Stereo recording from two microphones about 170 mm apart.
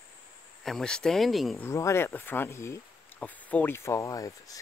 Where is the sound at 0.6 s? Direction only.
5° left (ahead or behind).